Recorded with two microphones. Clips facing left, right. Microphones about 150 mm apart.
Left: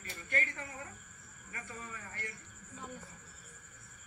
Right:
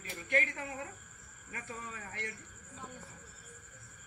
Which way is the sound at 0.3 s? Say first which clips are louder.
Right 5 dB; 85° right.